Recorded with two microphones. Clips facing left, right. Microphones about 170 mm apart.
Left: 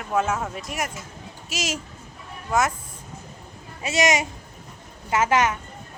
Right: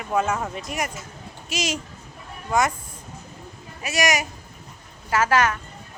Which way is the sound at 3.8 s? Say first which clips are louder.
Left 2 dB; 25° left (ahead or behind).